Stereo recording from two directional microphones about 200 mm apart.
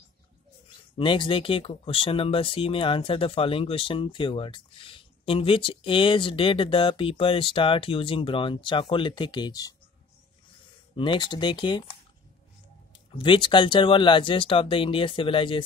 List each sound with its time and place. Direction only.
0.9 s speech: 25° left (ahead or behind)
11.0 s speech: 25° left (ahead or behind)
13.1 s speech: 25° left (ahead or behind)